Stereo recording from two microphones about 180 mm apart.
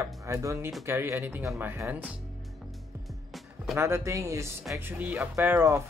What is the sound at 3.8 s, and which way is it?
Speech, 15° right (ahead or behind).